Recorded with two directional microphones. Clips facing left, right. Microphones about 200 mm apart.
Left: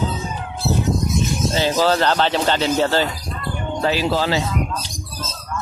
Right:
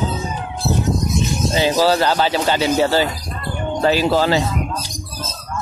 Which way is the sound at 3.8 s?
45° right (ahead or behind).